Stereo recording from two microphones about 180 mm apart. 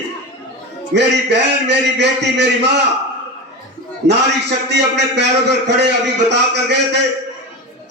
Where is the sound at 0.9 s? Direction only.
70° right (ahead or behind).